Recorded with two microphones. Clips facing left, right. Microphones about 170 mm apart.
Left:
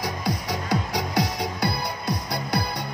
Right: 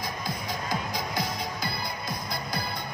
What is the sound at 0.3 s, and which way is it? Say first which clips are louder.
Music: left 6 dB; 75° left (ahead or behind).